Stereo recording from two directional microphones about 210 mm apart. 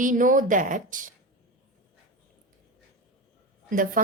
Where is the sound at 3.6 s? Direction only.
40° right (ahead or behind).